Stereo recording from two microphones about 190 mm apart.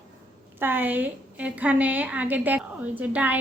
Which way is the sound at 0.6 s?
10° right (ahead or behind).